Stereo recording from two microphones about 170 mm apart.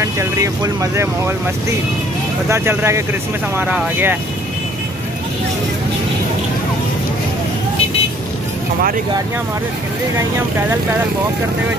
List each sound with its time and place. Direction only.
0.0 s speech: 15° right (ahead or behind)
2.5 s speech: 15° right (ahead or behind)